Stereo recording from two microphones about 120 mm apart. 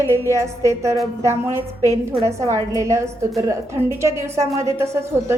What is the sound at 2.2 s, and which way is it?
A woman's voice, 25° right (ahead or behind).